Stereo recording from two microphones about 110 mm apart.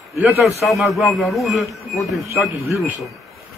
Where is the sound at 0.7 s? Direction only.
Centre (ahead or behind).